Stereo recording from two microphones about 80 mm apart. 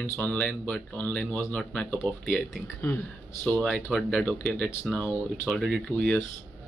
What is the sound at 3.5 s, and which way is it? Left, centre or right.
Speech, centre.